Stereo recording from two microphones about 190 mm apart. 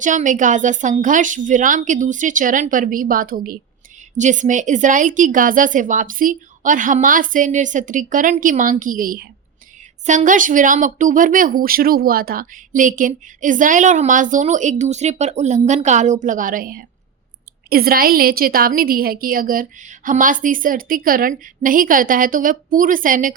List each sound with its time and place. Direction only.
0.0 s speech: 40° right (ahead or behind)